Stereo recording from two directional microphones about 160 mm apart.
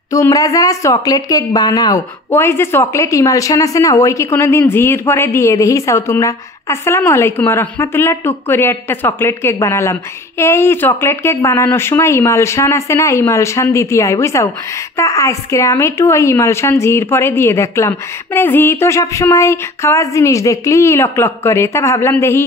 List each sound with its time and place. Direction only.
0.1 s a woman's voice: 20° left (ahead or behind)